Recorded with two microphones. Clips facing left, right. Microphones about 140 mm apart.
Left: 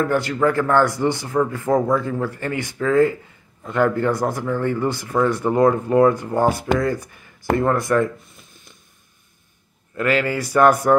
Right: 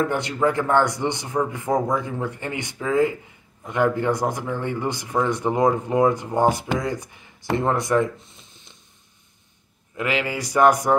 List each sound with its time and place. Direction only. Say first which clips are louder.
0.0 s speech: left 3 dB; 20° right (ahead or behind)
9.9 s speech: left 5 dB; 15° right (ahead or behind)